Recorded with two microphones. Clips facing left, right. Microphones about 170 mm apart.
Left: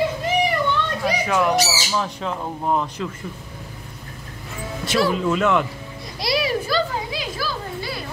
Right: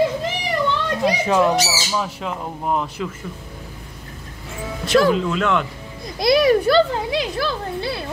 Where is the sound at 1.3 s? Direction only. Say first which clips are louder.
Right 1 dB; 20° right (ahead or behind).